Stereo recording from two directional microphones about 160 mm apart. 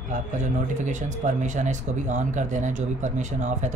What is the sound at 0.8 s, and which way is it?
Speech, 50° right (ahead or behind).